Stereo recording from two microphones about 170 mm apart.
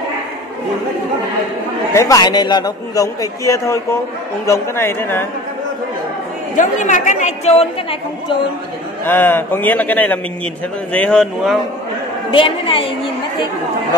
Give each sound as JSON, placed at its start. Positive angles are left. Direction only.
{"t": 2.0, "sound": "a man's voice", "side_deg": 20}
{"t": 6.5, "sound": "a woman's voice", "side_deg": 45}
{"t": 9.0, "sound": "a man's voice", "side_deg": 10}
{"t": 12.3, "sound": "a woman's voice", "side_deg": 30}